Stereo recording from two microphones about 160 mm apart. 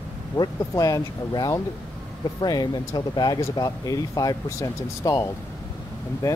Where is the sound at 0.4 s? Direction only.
20° left (ahead or behind).